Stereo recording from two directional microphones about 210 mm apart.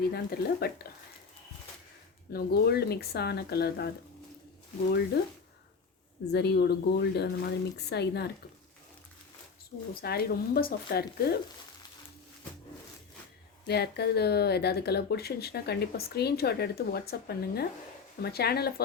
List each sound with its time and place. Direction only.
0.0 s speech: 50° left (ahead or behind)
2.3 s speech: 50° left (ahead or behind)
6.3 s speech: 50° left (ahead or behind)
10.0 s speech: 45° left (ahead or behind)
13.7 s speech: 50° left (ahead or behind)